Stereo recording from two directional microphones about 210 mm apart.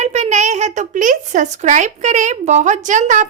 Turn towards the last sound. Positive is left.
turn(degrees=-35)  # may be behind; listen again after turning